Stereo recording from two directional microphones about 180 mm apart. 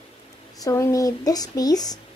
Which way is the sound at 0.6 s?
15° left (ahead or behind).